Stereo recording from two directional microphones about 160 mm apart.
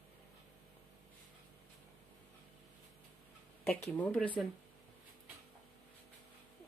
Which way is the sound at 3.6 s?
10° left (ahead or behind).